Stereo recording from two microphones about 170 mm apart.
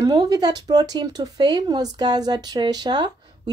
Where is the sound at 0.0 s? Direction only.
20° right (ahead or behind).